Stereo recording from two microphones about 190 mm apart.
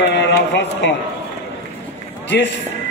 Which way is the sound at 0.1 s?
65° left (ahead or behind).